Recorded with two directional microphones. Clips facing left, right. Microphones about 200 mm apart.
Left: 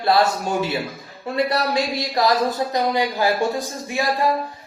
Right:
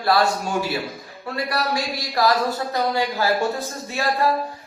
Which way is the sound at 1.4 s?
20° left (ahead or behind).